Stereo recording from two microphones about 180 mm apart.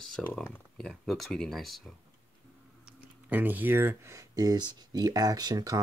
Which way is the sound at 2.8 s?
10° right (ahead or behind).